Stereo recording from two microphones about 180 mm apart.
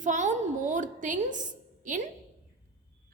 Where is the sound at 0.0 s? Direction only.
45° right (ahead or behind).